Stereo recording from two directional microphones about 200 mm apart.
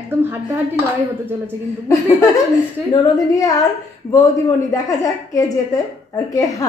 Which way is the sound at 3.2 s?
15° left (ahead or behind).